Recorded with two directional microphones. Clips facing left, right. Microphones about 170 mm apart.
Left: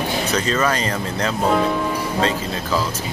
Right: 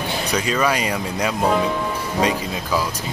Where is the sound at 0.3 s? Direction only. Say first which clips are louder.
Right 1 dB; 10° right (ahead or behind).